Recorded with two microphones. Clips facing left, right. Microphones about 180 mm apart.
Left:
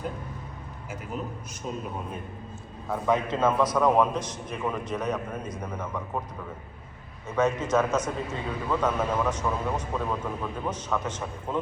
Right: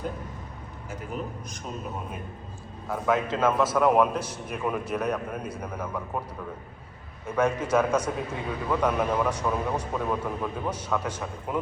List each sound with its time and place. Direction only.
3.1 s a man's voice: 25° left (ahead or behind)
3.6 s a man's voice: 5° right (ahead or behind)
7.3 s a man's voice: 10° right (ahead or behind)